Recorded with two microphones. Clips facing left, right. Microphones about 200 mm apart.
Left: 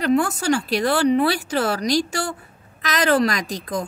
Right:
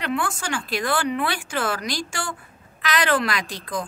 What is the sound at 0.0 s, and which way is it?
A woman's voice, 40° left (ahead or behind).